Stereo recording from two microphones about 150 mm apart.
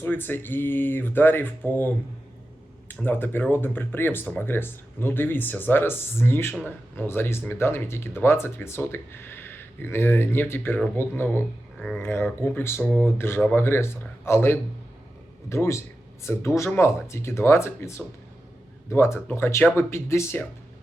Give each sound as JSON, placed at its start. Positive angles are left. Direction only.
{"t": 0.0, "sound": "speech", "side_deg": 15}
{"t": 2.9, "sound": "speech", "side_deg": 15}
{"t": 11.8, "sound": "speech", "side_deg": 0}
{"t": 12.0, "sound": "speech", "side_deg": 15}